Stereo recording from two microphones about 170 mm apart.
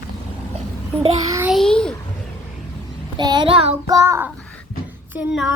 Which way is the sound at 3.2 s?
25° right (ahead or behind).